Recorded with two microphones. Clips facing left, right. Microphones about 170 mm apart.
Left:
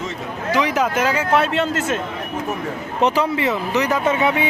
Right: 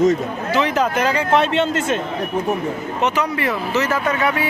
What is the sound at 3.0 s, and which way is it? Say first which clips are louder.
Speech: left 3 dB; 30° left (ahead or behind).